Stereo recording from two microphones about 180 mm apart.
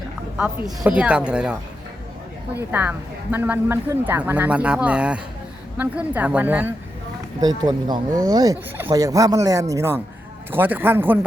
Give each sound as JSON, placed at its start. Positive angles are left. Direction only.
{"t": 0.3, "sound": "a woman's voice", "side_deg": -5}
{"t": 2.6, "sound": "speech", "side_deg": -10}
{"t": 7.4, "sound": "speech", "side_deg": -20}